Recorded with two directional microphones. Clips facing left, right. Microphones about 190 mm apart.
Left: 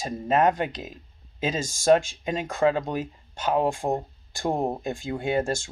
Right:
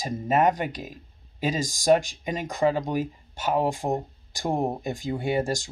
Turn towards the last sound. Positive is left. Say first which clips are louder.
# even
turn(degrees=-15)  # may be behind; listen again after turning